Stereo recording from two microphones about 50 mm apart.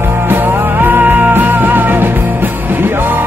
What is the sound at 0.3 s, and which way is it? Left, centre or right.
Music, right.